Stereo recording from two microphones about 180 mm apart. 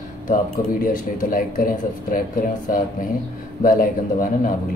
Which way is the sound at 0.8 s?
50° left (ahead or behind).